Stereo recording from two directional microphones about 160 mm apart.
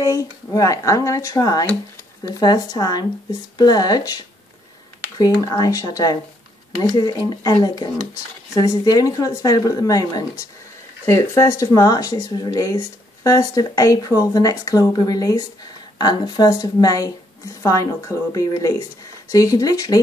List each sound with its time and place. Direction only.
0.0 s speech: 20° left (ahead or behind)